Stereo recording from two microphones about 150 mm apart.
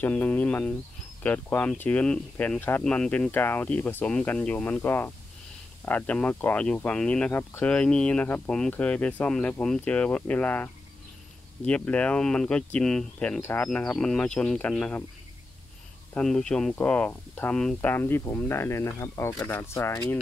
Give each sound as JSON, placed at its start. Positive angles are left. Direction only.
{"t": 0.0, "sound": "speech", "side_deg": 10}
{"t": 13.4, "sound": "speech", "side_deg": 15}
{"t": 16.2, "sound": "speech", "side_deg": 5}